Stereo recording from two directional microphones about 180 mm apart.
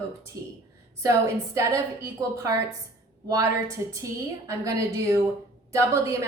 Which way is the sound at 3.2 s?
20° right (ahead or behind).